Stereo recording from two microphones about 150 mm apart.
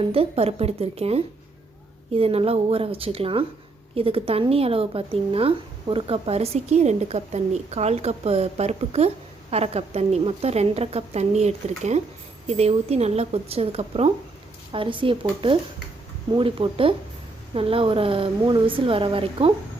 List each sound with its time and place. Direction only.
0.0 s a woman's voice: 40° right (ahead or behind)